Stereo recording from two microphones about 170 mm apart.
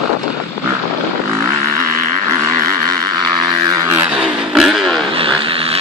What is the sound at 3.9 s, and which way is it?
Vehicle, 10° right (ahead or behind).